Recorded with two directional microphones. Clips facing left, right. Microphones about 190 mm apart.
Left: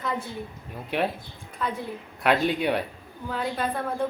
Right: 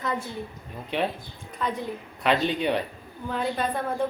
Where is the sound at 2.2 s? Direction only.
10° left (ahead or behind).